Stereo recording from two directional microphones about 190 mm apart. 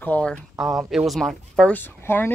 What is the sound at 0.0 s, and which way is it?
Speech, 5° left (ahead or behind).